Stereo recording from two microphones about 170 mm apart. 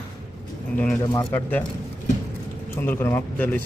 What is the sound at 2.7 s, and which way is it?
Speech, 15° left (ahead or behind).